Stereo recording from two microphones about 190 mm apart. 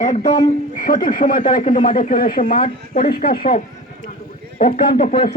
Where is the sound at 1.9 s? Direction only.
45° left (ahead or behind).